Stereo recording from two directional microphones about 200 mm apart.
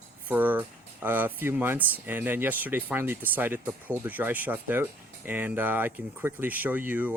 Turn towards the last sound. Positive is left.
turn(degrees=-10)  # may be behind; listen again after turning